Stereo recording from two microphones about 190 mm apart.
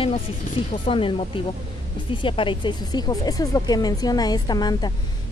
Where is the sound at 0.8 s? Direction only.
25° left (ahead or behind).